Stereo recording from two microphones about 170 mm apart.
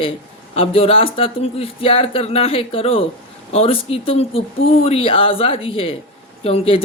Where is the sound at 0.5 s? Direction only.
35° left (ahead or behind).